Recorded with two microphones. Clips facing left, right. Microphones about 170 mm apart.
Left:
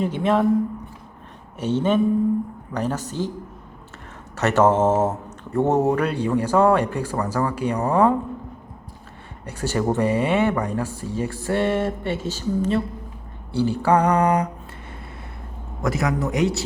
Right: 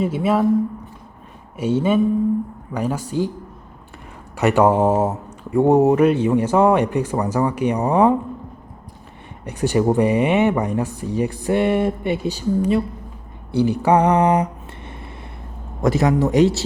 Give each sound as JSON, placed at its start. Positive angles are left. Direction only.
{"t": 0.0, "sound": "mantra", "side_deg": -5}
{"t": 1.5, "sound": "mantra", "side_deg": -10}
{"t": 4.4, "sound": "mantra", "side_deg": -15}
{"t": 9.5, "sound": "mantra", "side_deg": -15}
{"t": 15.8, "sound": "mantra", "side_deg": -30}